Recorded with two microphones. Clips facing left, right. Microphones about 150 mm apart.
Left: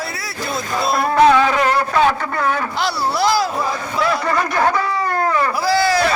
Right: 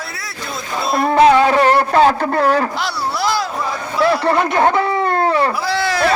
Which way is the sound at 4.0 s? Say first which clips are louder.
Right 5 dB; 30° right (ahead or behind).